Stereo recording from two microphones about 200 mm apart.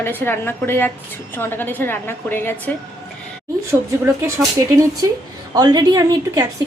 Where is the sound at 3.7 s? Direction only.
15° right (ahead or behind).